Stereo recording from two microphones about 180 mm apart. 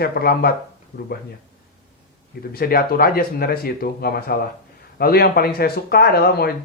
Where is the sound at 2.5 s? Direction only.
55° left (ahead or behind).